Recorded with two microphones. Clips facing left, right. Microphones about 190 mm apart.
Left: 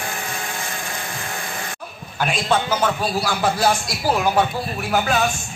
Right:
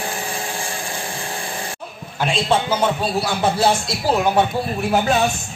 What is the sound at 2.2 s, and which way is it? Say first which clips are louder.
Speech: right 2 dB; 25° right (ahead or behind).